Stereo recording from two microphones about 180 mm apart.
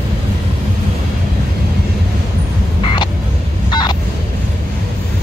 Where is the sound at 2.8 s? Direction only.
25° left (ahead or behind).